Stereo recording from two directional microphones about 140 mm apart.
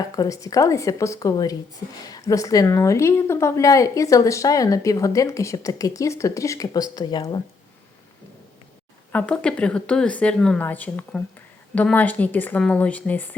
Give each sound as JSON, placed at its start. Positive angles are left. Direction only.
{"t": 0.2, "sound": "a woman's voice", "side_deg": 25}
{"t": 9.1, "sound": "speech", "side_deg": 10}